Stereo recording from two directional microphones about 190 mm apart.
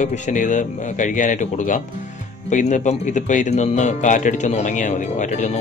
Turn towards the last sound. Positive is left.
turn(degrees=40)  # may be behind; listen again after turning